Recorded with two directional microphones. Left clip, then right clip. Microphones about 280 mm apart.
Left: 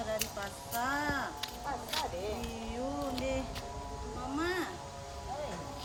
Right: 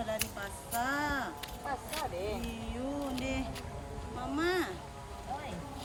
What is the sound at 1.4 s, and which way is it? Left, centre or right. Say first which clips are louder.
Speech: even; centre.